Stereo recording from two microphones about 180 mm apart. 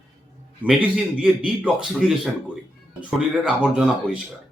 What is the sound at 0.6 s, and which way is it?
Speech, 5° right (ahead or behind).